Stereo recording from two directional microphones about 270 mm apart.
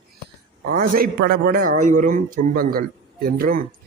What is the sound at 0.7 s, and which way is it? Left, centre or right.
A man's voice, right.